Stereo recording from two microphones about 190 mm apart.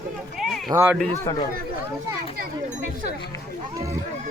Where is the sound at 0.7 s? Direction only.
15° right (ahead or behind).